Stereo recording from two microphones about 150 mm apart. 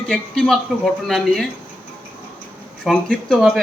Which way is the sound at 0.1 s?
5° left (ahead or behind).